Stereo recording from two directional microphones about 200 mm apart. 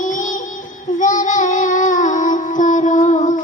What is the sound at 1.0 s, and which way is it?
Child singing, 40° left (ahead or behind).